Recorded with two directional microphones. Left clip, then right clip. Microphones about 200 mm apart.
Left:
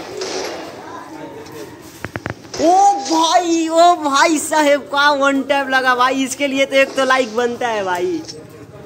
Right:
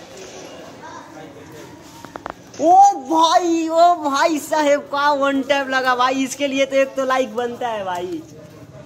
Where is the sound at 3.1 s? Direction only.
10° right (ahead or behind).